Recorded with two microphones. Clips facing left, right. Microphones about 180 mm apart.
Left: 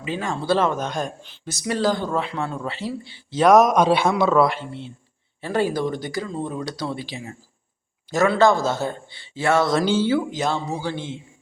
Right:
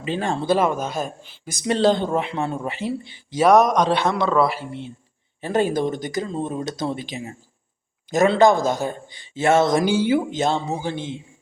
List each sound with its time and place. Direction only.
0.0 s speech: 30° right (ahead or behind)
0.4 s speech: 10° right (ahead or behind)
1.6 s speech: 25° right (ahead or behind)
3.4 s a man's voice: centre (ahead or behind)
5.4 s speech: 20° right (ahead or behind)